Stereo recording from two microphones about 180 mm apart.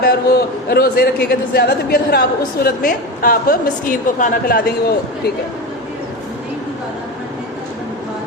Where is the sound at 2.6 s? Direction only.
50° left (ahead or behind).